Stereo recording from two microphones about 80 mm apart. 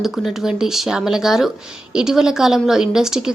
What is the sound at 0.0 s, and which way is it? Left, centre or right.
A woman's voice, centre.